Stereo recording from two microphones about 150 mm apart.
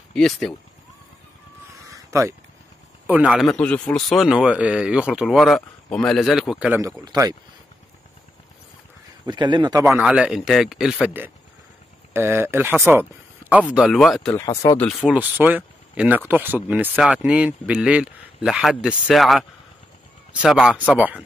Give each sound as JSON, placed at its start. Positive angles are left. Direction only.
{"t": 0.1, "sound": "a man's voice", "side_deg": 5}
{"t": 2.0, "sound": "a sound", "side_deg": -20}
{"t": 3.1, "sound": "a man's voice", "side_deg": -10}
{"t": 7.1, "sound": "a man's voice", "side_deg": -25}
{"t": 9.2, "sound": "a man's voice", "side_deg": -30}
{"t": 9.8, "sound": "speech", "side_deg": -15}
{"t": 10.0, "sound": "a man's voice", "side_deg": -5}
{"t": 12.1, "sound": "speech", "side_deg": -15}
{"t": 14.3, "sound": "speech", "side_deg": 25}
{"t": 14.8, "sound": "a man's voice", "side_deg": 0}
{"t": 15.1, "sound": "speech", "side_deg": -10}
{"t": 20.4, "sound": "speech", "side_deg": -5}